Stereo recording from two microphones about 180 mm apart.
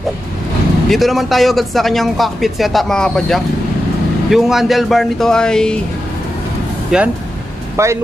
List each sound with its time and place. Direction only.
0.8 s a man's voice: centre (ahead or behind)
6.9 s a man's voice: 5° right (ahead or behind)
7.7 s speech: 15° right (ahead or behind)